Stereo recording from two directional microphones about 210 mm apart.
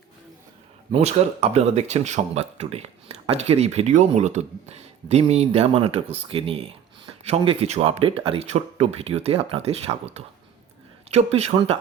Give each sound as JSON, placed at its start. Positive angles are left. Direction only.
{"t": 0.9, "sound": "speech", "side_deg": -30}